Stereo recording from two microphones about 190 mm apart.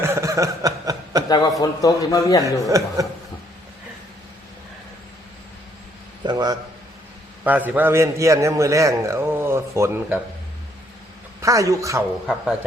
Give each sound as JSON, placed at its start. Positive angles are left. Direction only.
{"t": 0.0, "sound": "chuckle", "side_deg": -15}
{"t": 1.3, "sound": "a man's voice", "side_deg": 20}
{"t": 2.6, "sound": "a man's voice", "side_deg": -15}
{"t": 6.2, "sound": "a sound", "side_deg": -20}
{"t": 7.4, "sound": "a man's voice", "side_deg": -10}
{"t": 11.3, "sound": "a man's voice", "side_deg": -15}